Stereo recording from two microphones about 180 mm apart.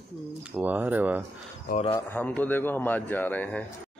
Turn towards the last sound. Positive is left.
turn(degrees=10)  # may be behind; listen again after turning